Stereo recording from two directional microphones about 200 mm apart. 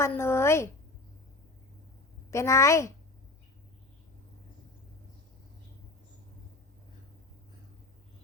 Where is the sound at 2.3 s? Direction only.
15° left (ahead or behind).